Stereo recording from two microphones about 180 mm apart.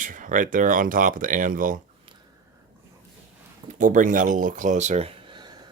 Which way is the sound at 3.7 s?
45° right (ahead or behind).